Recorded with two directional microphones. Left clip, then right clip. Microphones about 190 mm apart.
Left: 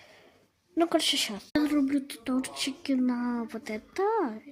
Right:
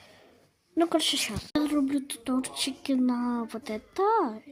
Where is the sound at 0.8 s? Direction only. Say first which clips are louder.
Even; centre (ahead or behind).